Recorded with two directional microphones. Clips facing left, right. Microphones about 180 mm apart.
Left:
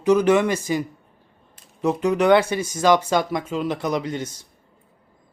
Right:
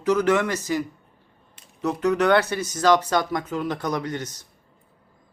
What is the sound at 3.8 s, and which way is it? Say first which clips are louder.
Speech: left 3 dB; 25° left (ahead or behind).